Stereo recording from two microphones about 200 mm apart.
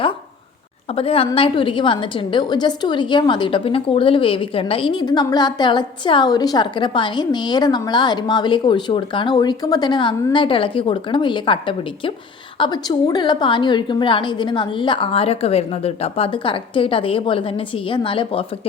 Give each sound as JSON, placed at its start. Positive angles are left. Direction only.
{"t": 0.9, "sound": "a woman's voice", "side_deg": 30}